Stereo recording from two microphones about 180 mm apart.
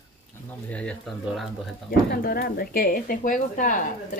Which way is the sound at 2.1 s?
55° left (ahead or behind).